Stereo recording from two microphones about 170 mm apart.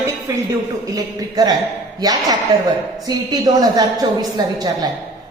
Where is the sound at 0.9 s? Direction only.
25° right (ahead or behind).